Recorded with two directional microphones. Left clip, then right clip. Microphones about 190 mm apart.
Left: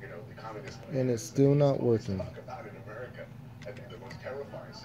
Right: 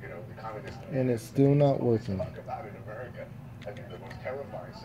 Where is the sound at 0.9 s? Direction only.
15° left (ahead or behind).